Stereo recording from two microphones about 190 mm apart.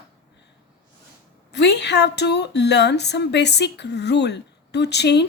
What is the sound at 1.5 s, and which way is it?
A woman's voice, 60° left (ahead or behind).